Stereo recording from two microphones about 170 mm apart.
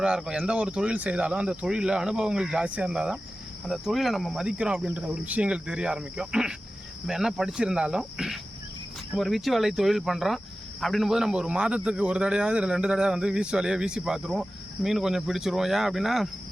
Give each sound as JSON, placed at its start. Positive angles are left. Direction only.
{"t": 0.0, "sound": "speech", "side_deg": -5}